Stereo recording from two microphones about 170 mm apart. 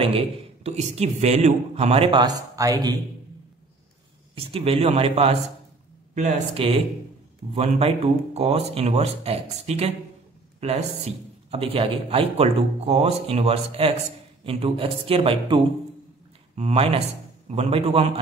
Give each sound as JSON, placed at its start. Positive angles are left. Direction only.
{"t": 0.7, "sound": "speech", "side_deg": -40}
{"t": 4.4, "sound": "speech", "side_deg": -35}